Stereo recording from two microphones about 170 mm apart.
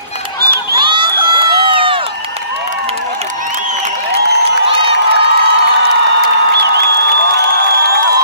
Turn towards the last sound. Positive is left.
turn(degrees=-70)  # may be behind; listen again after turning